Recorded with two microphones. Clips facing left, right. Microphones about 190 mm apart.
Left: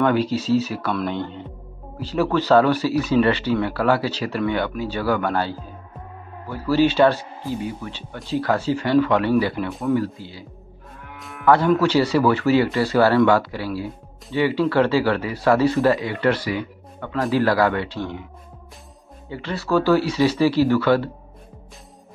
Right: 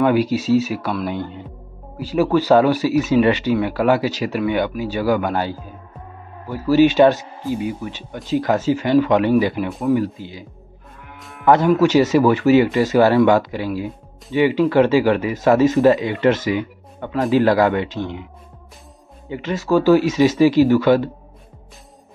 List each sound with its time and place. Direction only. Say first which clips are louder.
0.0 s speech: right 3 dB; 10° right (ahead or behind)
11.1 s moo: left 3 dB; centre (ahead or behind)
11.4 s speech: right 3 dB; 20° right (ahead or behind)
19.2 s speech: right 4 dB; 15° right (ahead or behind)